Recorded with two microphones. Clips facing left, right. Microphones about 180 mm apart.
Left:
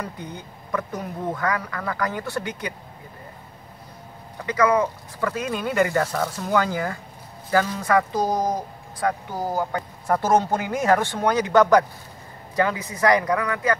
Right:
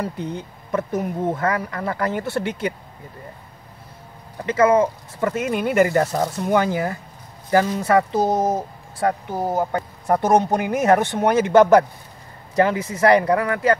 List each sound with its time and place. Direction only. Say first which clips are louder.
0.0 s speech: right 6 dB; 30° right (ahead or behind)
4.5 s speech: right 4 dB; 25° right (ahead or behind)